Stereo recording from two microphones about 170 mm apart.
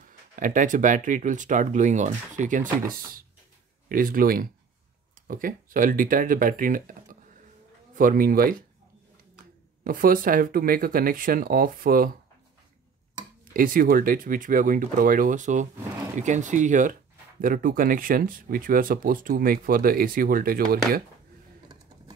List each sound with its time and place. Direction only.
0.4 s speech: 50° right (ahead or behind)
9.8 s speech: 55° right (ahead or behind)
13.5 s speech: 55° right (ahead or behind)